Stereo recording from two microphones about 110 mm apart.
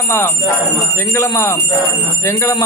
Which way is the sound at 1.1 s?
25° left (ahead or behind).